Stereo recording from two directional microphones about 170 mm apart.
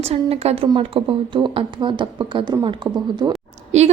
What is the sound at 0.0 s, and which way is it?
A woman's voice, 35° right (ahead or behind).